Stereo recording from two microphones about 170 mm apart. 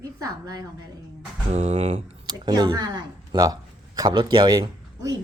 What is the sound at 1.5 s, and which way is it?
Speech, 35° right (ahead or behind).